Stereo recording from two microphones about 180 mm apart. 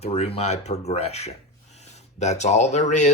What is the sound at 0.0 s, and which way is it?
Speech, 35° left (ahead or behind).